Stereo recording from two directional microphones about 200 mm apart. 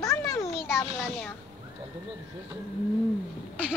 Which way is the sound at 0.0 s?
15° left (ahead or behind).